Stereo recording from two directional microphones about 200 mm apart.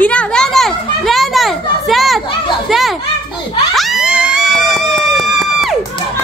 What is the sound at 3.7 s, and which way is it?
Music, centre (ahead or behind).